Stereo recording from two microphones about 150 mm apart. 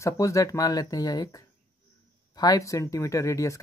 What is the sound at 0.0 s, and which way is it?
Speech, 20° left (ahead or behind).